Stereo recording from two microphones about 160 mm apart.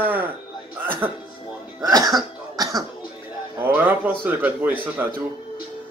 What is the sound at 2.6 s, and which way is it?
Cough, 25° right (ahead or behind).